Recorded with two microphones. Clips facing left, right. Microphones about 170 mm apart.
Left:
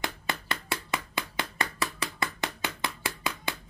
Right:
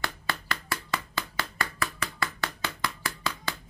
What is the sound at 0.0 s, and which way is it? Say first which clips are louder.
Hammer: even; 20° left (ahead or behind).